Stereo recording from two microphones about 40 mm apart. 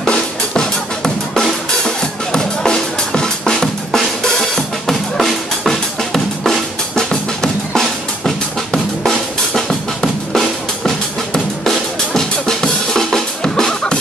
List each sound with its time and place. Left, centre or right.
0.6 s drum kit: centre
3.6 s drum: centre